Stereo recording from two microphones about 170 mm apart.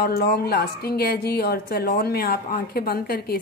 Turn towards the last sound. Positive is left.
turn(degrees=60)  # may be behind; listen again after turning